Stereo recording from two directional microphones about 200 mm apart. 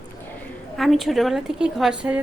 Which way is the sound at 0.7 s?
Centre (ahead or behind).